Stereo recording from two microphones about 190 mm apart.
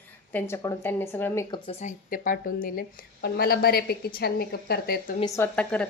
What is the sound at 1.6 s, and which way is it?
Speech, 35° left (ahead or behind).